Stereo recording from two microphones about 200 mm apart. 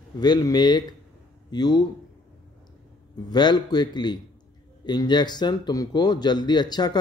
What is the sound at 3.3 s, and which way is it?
Speech, 20° left (ahead or behind).